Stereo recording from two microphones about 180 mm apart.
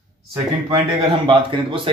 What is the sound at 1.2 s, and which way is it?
Speech, 25° right (ahead or behind).